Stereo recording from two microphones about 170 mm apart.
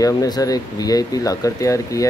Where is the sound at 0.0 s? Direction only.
20° left (ahead or behind).